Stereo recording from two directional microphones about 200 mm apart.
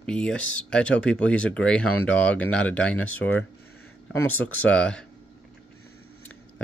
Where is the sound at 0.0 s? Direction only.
5° left (ahead or behind).